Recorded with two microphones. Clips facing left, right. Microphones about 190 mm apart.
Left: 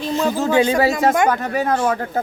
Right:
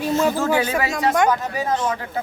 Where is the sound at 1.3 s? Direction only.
60° left (ahead or behind).